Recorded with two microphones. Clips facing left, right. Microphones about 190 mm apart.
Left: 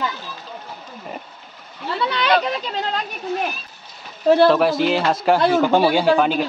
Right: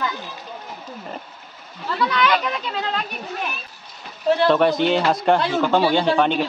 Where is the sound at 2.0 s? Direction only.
30° left (ahead or behind).